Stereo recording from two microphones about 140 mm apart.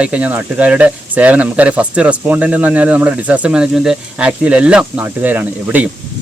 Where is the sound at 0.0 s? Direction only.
10° right (ahead or behind).